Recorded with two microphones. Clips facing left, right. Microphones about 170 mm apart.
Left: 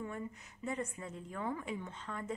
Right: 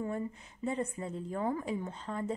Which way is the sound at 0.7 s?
30° right (ahead or behind).